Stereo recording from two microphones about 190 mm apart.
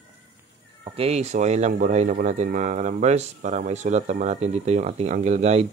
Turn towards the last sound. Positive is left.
turn(degrees=-35)  # may be behind; listen again after turning